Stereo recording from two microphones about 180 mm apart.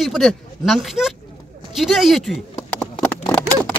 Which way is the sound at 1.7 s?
Centre (ahead or behind).